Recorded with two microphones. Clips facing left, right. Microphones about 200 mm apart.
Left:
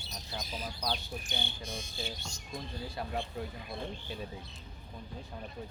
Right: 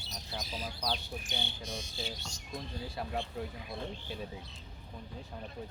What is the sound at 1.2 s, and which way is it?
Speech, 55° left (ahead or behind).